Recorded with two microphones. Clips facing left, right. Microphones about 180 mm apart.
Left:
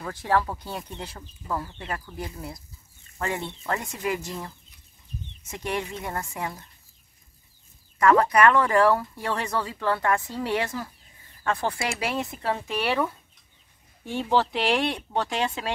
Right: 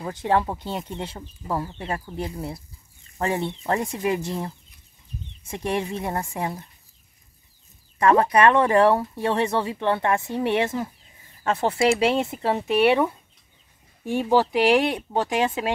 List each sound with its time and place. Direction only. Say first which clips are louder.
0.0 s speech: right 3 dB; 20° right (ahead or behind)
8.0 s speech: right 1 dB; 25° right (ahead or behind)